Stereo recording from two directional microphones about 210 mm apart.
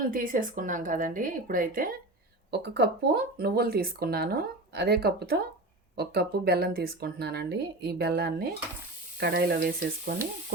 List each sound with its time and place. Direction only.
0.0 s a woman's voice: 40° right (ahead or behind)